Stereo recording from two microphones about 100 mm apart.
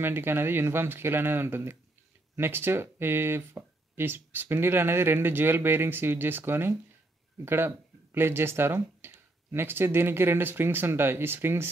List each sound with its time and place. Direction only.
0.0 s speech: 25° right (ahead or behind)